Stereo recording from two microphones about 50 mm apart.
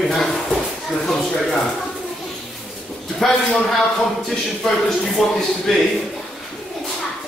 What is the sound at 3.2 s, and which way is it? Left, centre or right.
Speech, centre.